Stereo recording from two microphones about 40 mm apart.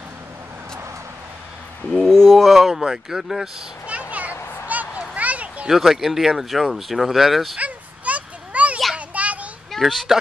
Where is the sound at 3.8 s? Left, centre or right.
Right.